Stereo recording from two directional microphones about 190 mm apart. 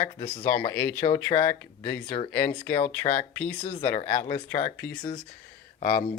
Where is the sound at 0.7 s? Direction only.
10° left (ahead or behind).